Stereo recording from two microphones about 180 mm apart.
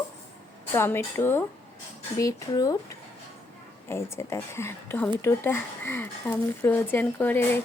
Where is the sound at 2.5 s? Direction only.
20° left (ahead or behind).